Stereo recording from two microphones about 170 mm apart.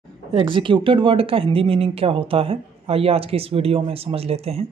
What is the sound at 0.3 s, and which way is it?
Speech, 30° right (ahead or behind).